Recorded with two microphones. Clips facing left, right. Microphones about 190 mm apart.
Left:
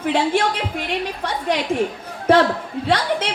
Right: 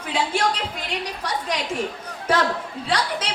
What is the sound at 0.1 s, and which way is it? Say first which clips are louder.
Speech: left 4 dB; 55° left (ahead or behind).